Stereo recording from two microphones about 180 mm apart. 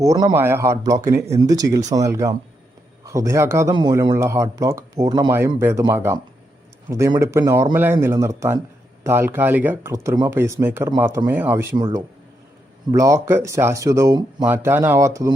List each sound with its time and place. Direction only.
0.0 s speech: 20° right (ahead or behind)
12.9 s speech: 15° right (ahead or behind)
14.4 s speech: 10° right (ahead or behind)